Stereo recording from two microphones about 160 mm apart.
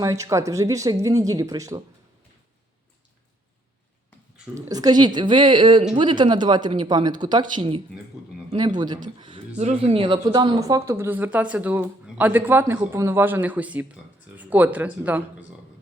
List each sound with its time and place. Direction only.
0.0 s speech: 20° right (ahead or behind)
4.5 s speech: 25° right (ahead or behind)
9.6 s speech: 40° right (ahead or behind); by 15.4 s 10° right (ahead or behind)